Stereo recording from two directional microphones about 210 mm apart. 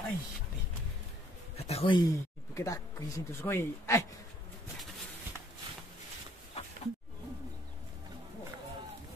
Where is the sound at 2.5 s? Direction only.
15° left (ahead or behind).